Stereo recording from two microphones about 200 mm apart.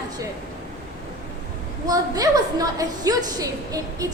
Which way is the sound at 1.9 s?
20° right (ahead or behind).